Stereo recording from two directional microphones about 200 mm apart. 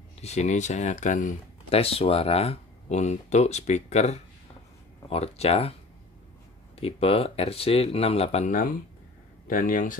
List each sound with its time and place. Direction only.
0.2 s speech: 35° left (ahead or behind)
6.8 s speech: 30° left (ahead or behind)